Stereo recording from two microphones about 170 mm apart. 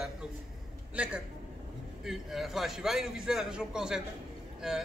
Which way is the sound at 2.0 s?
Centre (ahead or behind).